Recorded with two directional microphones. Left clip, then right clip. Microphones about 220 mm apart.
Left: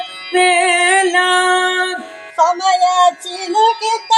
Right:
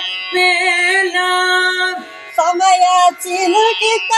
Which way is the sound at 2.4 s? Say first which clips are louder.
Right 1 dB; 20° right (ahead or behind).